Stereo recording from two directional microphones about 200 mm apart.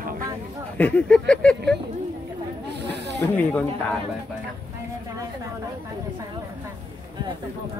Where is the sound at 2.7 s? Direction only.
60° right (ahead or behind).